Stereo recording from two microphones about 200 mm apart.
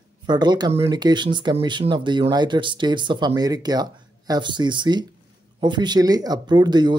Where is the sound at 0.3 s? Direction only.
20° right (ahead or behind).